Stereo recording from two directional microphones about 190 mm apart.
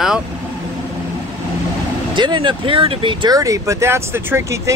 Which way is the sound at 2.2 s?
25° right (ahead or behind).